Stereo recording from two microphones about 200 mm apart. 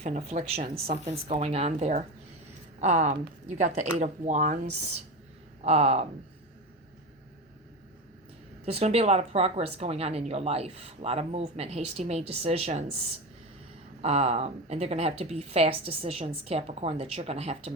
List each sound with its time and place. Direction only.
0.0 s speech: 30° right (ahead or behind)
8.6 s speech: 30° right (ahead or behind)
14.0 s speech: 30° right (ahead or behind)